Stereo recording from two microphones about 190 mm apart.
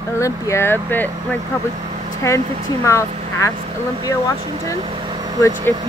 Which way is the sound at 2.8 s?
15° left (ahead or behind).